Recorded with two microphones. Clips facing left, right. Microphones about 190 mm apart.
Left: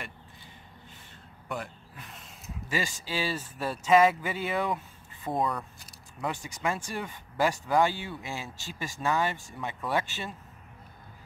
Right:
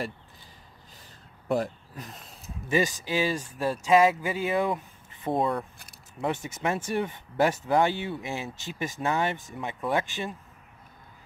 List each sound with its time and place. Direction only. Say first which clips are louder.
1.5 s a sound: right 10 dB; 40° right (ahead or behind)
2.7 s speech: right 7 dB; 20° right (ahead or behind)
5.2 s speech: right 3 dB; 25° right (ahead or behind)